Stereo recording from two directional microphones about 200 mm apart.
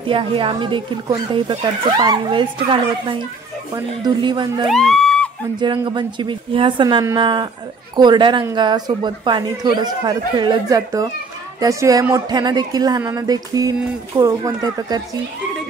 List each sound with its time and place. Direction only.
0.1 s speech: 25° right (ahead or behind)
4.6 s speech: centre (ahead or behind)
5.6 s speech: 25° right (ahead or behind)